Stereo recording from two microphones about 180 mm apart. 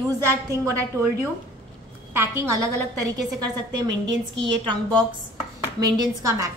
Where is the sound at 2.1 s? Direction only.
15° right (ahead or behind).